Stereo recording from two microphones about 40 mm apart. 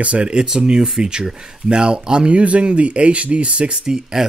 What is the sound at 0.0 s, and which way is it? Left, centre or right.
Speech, right.